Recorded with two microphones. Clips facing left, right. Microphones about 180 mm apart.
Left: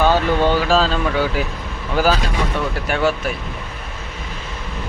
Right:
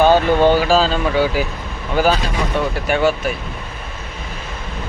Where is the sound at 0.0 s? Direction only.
15° right (ahead or behind).